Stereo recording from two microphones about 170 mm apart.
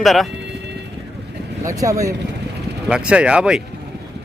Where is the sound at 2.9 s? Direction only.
5° right (ahead or behind).